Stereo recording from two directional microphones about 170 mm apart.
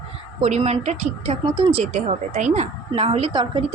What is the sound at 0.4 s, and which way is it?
A woman's voice, 40° right (ahead or behind).